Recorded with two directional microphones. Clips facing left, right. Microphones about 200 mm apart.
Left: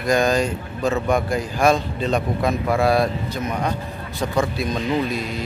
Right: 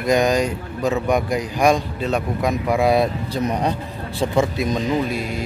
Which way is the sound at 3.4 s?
35° right (ahead or behind).